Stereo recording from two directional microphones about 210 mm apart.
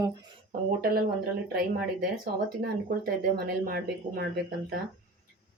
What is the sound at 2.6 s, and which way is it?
Speech, 45° right (ahead or behind).